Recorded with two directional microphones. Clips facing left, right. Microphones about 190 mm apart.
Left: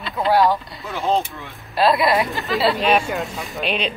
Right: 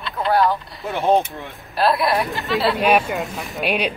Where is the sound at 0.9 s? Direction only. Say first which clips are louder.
Right 4 dB; 55° right (ahead or behind).